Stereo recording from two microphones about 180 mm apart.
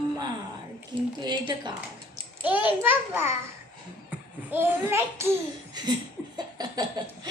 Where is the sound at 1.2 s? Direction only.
25° right (ahead or behind).